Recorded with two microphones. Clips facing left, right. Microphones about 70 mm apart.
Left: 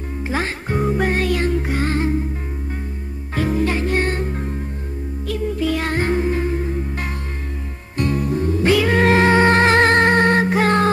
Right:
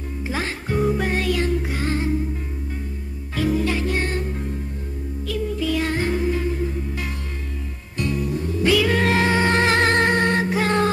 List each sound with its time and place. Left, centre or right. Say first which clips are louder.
0.3 s music: left 3 dB; left
3.3 s music: left 2 dB; left
8.0 s music: left 4 dB; left